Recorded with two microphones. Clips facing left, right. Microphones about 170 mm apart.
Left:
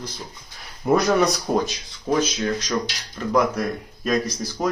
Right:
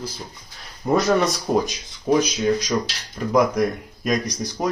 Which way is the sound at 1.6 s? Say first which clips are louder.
Right 3 dB; 15° right (ahead or behind).